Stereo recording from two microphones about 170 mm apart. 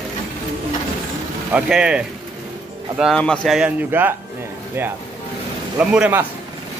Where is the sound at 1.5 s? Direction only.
5° right (ahead or behind).